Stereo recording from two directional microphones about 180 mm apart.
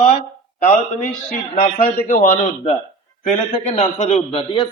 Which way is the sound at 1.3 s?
50° left (ahead or behind).